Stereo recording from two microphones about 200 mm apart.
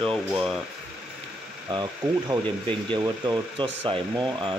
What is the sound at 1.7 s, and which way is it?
Speech, 20° right (ahead or behind).